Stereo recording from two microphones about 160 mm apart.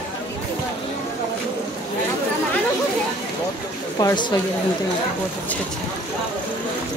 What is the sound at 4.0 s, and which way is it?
Speech, 25° left (ahead or behind).